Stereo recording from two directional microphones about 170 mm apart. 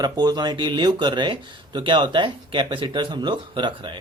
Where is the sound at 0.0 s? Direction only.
25° right (ahead or behind).